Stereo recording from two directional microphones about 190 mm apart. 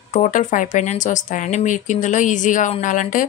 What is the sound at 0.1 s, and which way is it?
Speech, 40° left (ahead or behind).